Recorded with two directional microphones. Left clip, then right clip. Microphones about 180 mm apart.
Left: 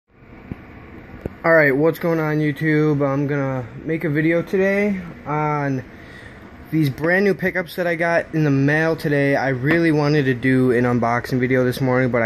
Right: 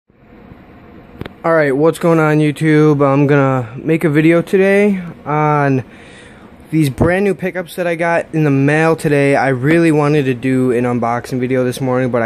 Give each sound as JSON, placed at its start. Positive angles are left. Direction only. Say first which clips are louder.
{"t": 1.4, "sound": "speech", "louder": "right 3 dB", "side_deg": -20}
{"t": 6.7, "sound": "speech", "louder": "right 5 dB", "side_deg": -30}
{"t": 7.2, "sound": "speech", "louder": "right 2 dB", "side_deg": -20}